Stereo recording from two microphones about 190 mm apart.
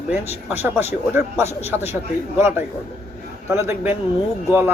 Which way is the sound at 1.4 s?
35° left (ahead or behind).